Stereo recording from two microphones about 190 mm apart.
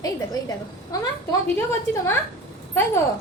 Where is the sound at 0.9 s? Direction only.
20° left (ahead or behind).